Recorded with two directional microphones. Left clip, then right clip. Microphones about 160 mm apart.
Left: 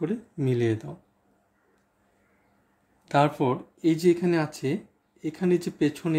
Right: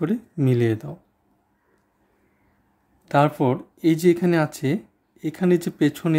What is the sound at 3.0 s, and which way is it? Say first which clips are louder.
Speech: right 3 dB; 30° right (ahead or behind).